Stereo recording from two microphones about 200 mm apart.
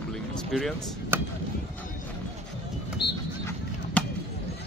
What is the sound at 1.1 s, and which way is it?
Chop, 10° right (ahead or behind).